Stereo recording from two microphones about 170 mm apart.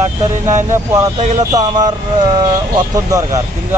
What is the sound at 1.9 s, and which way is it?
Speech, 25° right (ahead or behind).